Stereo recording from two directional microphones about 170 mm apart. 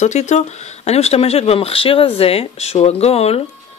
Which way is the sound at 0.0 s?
45° left (ahead or behind).